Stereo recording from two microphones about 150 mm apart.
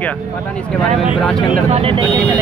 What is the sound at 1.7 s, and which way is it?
Speech, 40° right (ahead or behind).